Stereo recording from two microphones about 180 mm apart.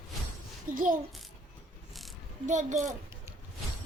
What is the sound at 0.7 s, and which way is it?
Speech, 50° right (ahead or behind).